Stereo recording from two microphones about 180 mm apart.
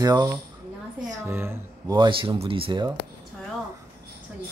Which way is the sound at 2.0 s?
30° right (ahead or behind).